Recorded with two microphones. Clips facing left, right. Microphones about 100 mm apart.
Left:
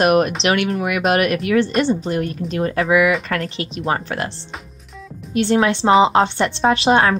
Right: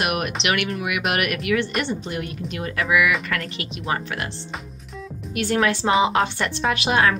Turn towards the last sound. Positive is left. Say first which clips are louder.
# left 5 dB
turn(degrees=30)  # may be behind; listen again after turning